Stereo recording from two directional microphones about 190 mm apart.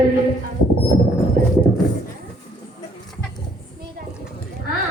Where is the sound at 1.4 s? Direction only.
50° right (ahead or behind).